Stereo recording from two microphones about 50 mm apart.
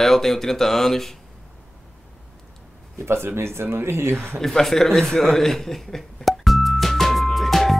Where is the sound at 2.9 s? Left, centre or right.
Right.